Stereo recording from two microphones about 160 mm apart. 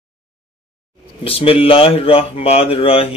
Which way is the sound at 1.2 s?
35° left (ahead or behind).